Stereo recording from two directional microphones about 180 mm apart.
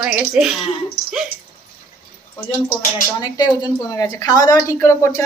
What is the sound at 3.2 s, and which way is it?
A woman's voice, 25° left (ahead or behind).